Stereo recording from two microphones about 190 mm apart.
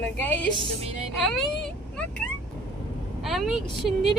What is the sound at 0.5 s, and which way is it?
Music, 25° right (ahead or behind).